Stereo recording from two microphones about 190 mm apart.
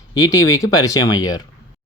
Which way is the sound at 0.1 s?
20° left (ahead or behind).